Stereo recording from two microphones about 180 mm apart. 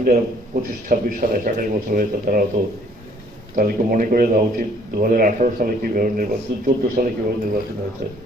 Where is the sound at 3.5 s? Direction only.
55° right (ahead or behind).